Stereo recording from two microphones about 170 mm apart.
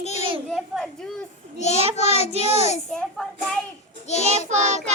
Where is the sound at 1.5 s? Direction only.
40° left (ahead or behind).